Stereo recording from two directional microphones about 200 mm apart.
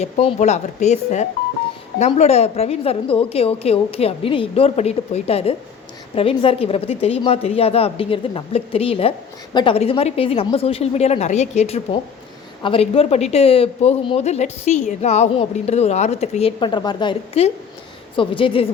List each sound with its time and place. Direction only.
0.0 s a woman's voice: 30° left (ahead or behind)